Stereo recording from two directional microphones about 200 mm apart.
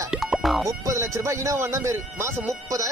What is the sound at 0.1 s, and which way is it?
Music, 5° right (ahead or behind).